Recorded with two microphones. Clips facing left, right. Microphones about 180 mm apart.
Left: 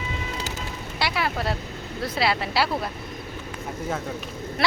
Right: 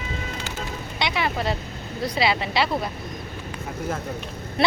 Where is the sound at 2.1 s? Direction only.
Centre (ahead or behind).